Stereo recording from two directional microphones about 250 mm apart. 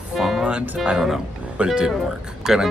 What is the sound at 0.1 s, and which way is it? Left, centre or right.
Speech, centre.